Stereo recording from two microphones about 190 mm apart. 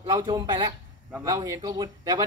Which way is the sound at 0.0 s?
20° right (ahead or behind).